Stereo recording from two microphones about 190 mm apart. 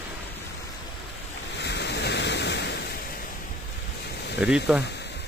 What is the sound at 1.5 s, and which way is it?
Waves, 65° left (ahead or behind).